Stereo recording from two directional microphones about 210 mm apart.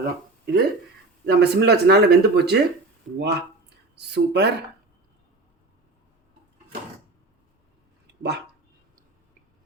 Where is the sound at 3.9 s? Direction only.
50° right (ahead or behind).